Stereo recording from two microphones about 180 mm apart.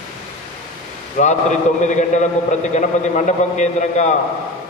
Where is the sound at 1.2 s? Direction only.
45° left (ahead or behind).